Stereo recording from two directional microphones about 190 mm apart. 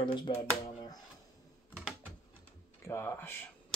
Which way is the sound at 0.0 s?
25° left (ahead or behind).